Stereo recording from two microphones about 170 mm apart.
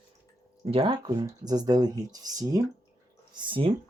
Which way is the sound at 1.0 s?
25° right (ahead or behind).